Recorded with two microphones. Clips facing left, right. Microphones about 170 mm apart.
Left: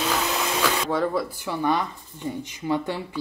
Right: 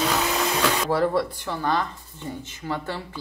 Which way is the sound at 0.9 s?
Centre (ahead or behind).